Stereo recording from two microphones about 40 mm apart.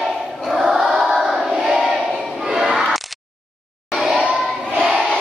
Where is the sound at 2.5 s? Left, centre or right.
Centre.